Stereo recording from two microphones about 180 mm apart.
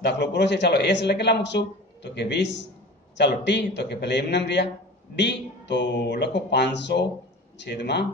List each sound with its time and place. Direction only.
0.0 s speech: 75° left (ahead or behind)